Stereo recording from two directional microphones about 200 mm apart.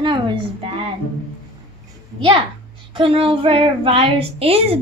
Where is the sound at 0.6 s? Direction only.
25° right (ahead or behind).